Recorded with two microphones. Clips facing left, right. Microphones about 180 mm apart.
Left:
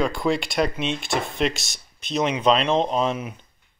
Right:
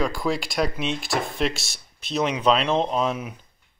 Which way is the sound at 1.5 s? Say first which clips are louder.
Right 1 dB; 30° right (ahead or behind).